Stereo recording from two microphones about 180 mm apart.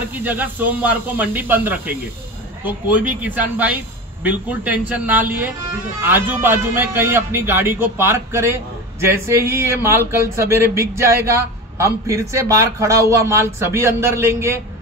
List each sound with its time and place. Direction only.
0.1 s speech: 10° right (ahead or behind)